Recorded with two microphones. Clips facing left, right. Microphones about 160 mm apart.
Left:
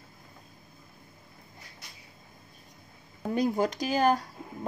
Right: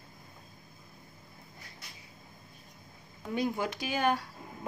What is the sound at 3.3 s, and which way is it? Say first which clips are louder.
Speech: left 5 dB; 40° left (ahead or behind).